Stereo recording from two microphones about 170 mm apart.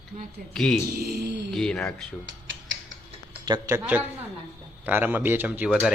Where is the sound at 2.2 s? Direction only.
90° right.